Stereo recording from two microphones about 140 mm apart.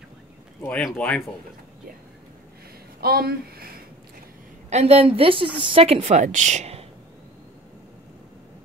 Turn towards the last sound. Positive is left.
turn(degrees=-50)  # may be behind; listen again after turning